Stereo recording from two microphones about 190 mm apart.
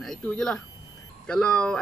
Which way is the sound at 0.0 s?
5° left (ahead or behind).